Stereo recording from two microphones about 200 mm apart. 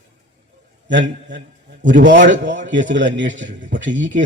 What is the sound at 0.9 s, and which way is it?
A man's voice, 60° right (ahead or behind).